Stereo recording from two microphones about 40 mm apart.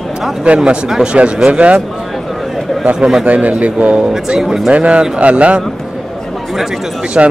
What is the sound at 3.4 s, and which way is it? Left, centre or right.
Speech, right.